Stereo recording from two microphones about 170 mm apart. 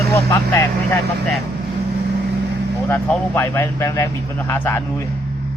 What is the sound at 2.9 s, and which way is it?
Speech, 10° left (ahead or behind).